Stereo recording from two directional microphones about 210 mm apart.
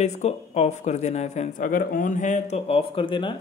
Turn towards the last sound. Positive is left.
turn(degrees=25)  # may be behind; listen again after turning